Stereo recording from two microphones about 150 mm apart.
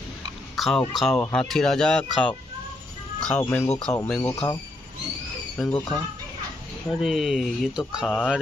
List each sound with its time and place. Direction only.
0.6 s speech: centre (ahead or behind)
4.2 s speech: 25° left (ahead or behind)
5.6 s speech: 10° left (ahead or behind)
7.0 s speech: centre (ahead or behind)